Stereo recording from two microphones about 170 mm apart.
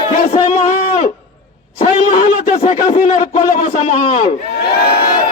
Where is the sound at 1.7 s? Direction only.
40° left (ahead or behind).